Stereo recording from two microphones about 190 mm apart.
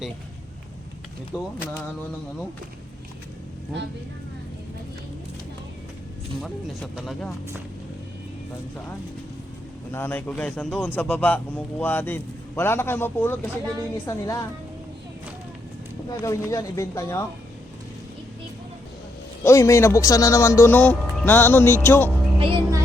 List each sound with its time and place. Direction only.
1.3 s speech: 5° right (ahead or behind)
6.4 s speech: centre (ahead or behind)
9.9 s speech: 10° left (ahead or behind)
16.2 s speech: 15° left (ahead or behind)
19.5 s speech: 15° left (ahead or behind)
22.4 s speech: 25° right (ahead or behind)